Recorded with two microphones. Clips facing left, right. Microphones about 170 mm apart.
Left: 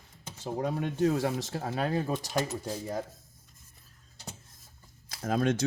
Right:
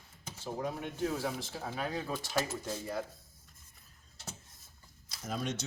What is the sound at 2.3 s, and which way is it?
Speech, 20° left (ahead or behind).